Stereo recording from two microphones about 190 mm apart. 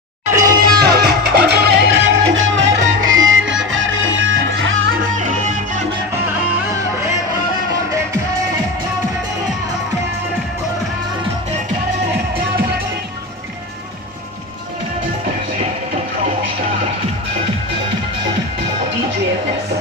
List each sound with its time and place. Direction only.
0.4 s music: 50° right (ahead or behind); by 4.9 s 90° right
4.9 s music: 45° right (ahead or behind)
6.5 s music: 15° right (ahead or behind)